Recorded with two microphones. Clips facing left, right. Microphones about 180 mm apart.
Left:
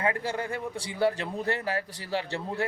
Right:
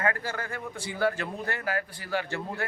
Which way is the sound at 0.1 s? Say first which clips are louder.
Left 3 dB; 25° left (ahead or behind).